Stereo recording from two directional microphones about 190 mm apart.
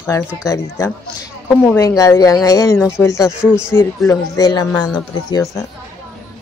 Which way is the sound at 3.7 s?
15° left (ahead or behind).